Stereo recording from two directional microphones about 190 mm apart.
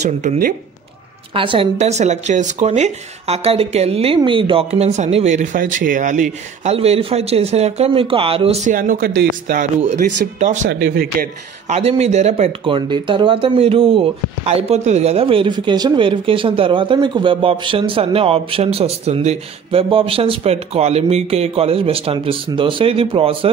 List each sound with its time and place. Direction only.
0.0 s speech: 40° right (ahead or behind)
1.3 s speech: 25° right (ahead or behind)
10.7 s a man's voice: 60° right (ahead or behind)
11.7 s speech: 35° right (ahead or behind)